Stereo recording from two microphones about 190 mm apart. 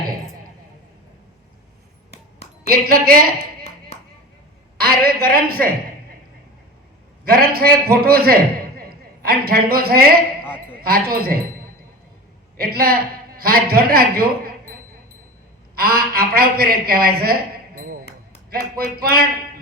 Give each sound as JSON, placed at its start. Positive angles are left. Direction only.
{"t": 2.6, "sound": "a man's voice", "side_deg": -50}
{"t": 4.8, "sound": "a man's voice", "side_deg": -50}
{"t": 7.3, "sound": "a man's voice", "side_deg": -50}
{"t": 12.5, "sound": "a man's voice", "side_deg": -50}
{"t": 15.7, "sound": "a man's voice", "side_deg": -50}
{"t": 17.7, "sound": "music", "side_deg": -50}
{"t": 18.9, "sound": "a man's voice", "side_deg": -50}